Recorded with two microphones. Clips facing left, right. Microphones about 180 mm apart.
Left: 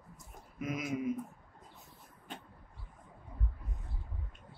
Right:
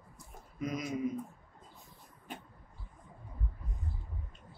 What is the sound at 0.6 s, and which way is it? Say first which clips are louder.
Speech: even; 5° left (ahead or behind).